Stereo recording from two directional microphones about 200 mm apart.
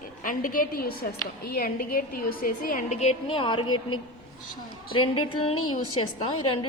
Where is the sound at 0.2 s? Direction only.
45° left (ahead or behind); by 3.6 s 25° left (ahead or behind).